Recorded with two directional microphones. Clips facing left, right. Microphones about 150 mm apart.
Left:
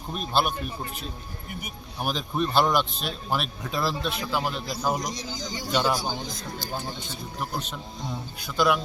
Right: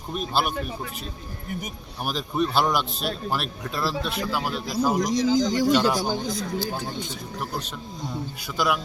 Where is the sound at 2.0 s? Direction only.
5° right (ahead or behind).